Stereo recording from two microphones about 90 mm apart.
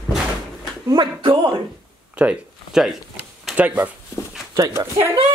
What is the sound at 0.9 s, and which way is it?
Speech, 55° right (ahead or behind).